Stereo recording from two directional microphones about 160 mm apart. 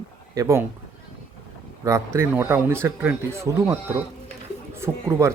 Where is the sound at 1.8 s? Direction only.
20° right (ahead or behind).